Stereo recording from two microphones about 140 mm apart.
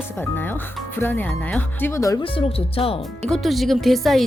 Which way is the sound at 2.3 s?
40° left (ahead or behind).